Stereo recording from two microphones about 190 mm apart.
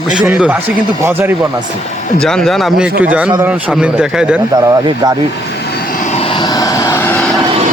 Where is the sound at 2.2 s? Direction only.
5° left (ahead or behind).